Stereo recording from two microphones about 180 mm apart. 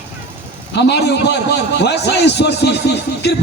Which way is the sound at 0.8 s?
70° left (ahead or behind).